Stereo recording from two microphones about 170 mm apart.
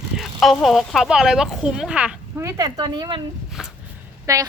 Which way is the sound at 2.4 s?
20° right (ahead or behind).